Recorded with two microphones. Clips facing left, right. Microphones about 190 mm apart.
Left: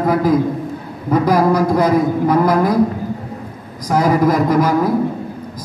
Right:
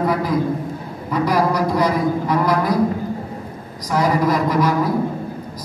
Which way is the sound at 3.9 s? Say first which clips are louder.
Left 4 dB; 50° left (ahead or behind).